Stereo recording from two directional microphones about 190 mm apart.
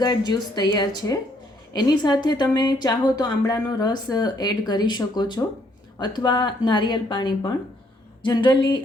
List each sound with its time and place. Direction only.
0.0 s a woman's voice: 20° left (ahead or behind)